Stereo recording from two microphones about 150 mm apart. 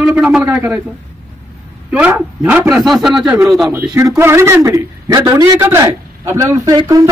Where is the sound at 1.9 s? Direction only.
10° right (ahead or behind).